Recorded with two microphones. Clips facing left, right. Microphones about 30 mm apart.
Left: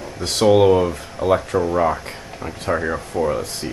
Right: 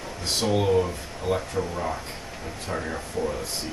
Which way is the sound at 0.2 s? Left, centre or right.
Left.